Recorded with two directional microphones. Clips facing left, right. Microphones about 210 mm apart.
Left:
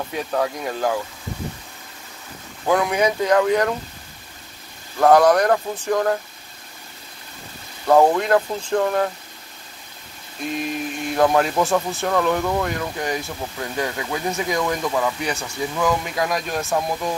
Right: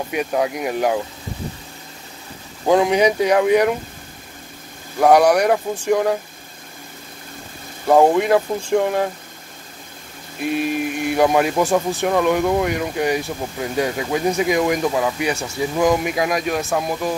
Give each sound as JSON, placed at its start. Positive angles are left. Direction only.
{"t": 0.1, "sound": "speech", "side_deg": -15}
{"t": 2.6, "sound": "speech", "side_deg": -25}
{"t": 4.9, "sound": "speech", "side_deg": -15}
{"t": 7.9, "sound": "speech", "side_deg": -15}
{"t": 10.5, "sound": "speech", "side_deg": -10}